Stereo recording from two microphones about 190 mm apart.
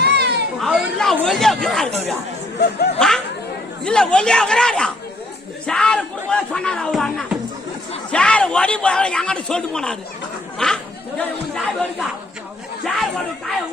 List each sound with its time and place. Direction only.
0.0 s children playing: 60° right (ahead or behind)
0.6 s chatter: centre (ahead or behind)
2.6 s speech: 60° left (ahead or behind)
3.8 s a man's voice: 5° left (ahead or behind)